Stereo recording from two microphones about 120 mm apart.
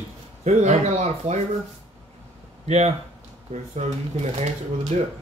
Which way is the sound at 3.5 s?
65° right (ahead or behind).